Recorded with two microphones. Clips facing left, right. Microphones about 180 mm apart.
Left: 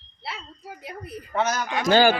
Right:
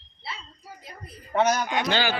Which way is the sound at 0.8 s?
65° left (ahead or behind).